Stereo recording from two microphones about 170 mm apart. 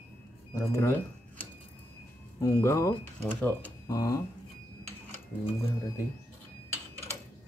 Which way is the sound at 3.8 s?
20° left (ahead or behind).